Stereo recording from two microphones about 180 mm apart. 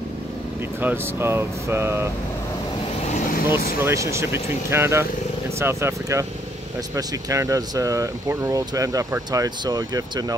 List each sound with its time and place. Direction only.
0.7 s speech: 10° right (ahead or behind)
3.2 s speech: 50° left (ahead or behind)
3.8 s speech: 15° right (ahead or behind)